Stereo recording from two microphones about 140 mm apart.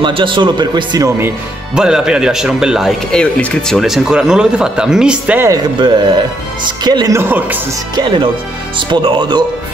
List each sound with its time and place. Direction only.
0.0 s speech: 35° right (ahead or behind)
1.8 s speech: 5° right (ahead or behind)
5.5 s speech: 30° right (ahead or behind)
7.2 s speech: 15° right (ahead or behind)
7.9 s speech: 35° right (ahead or behind)